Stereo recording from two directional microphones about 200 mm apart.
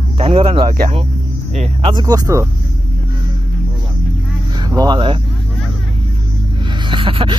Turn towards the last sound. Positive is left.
turn(degrees=-25)  # may be behind; listen again after turning